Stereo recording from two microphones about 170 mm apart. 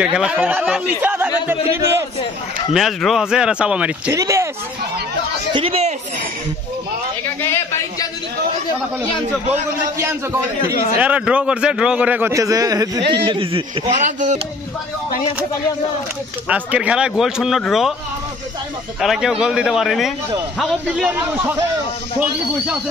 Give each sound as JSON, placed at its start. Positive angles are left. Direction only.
{"t": 0.0, "sound": "a man's voice", "side_deg": -5}
{"t": 2.7, "sound": "a man's voice", "side_deg": 0}
{"t": 4.1, "sound": "speech", "side_deg": -20}
{"t": 5.5, "sound": "speech", "side_deg": -35}
{"t": 11.0, "sound": "a man's voice", "side_deg": -5}
{"t": 14.0, "sound": "speech", "side_deg": -45}
{"t": 16.4, "sound": "a man's voice", "side_deg": -10}
{"t": 18.9, "sound": "a man's voice", "side_deg": 0}